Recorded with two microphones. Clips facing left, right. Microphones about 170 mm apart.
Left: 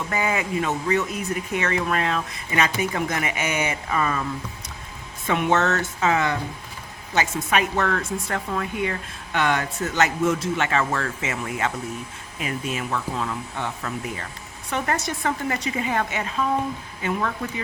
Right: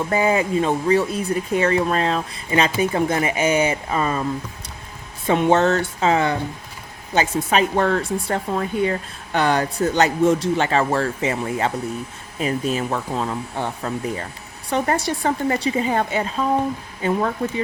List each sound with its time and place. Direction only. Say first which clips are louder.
0.1 s speech: right 6 dB; 35° right (ahead or behind)